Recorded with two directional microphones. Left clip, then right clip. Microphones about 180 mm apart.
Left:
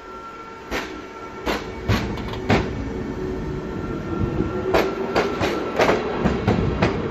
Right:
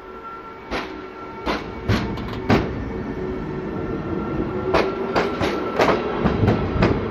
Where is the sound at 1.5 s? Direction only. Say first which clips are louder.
Even; 45° right (ahead or behind).